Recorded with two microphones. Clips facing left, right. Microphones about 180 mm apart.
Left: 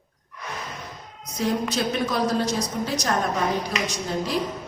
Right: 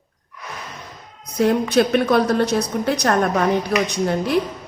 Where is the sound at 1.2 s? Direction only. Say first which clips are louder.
Right 7 dB; 60° right (ahead or behind).